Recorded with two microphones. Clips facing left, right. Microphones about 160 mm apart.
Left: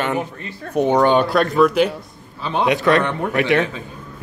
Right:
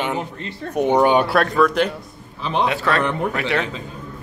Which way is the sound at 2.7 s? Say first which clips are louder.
Left 5 dB; 15° left (ahead or behind).